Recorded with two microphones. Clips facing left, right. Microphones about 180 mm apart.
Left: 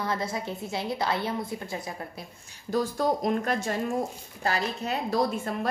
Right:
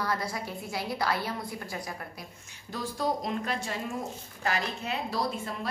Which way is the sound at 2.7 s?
45° left (ahead or behind).